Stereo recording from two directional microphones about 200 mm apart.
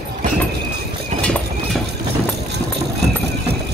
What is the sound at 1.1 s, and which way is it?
Clip-clop, 35° right (ahead or behind).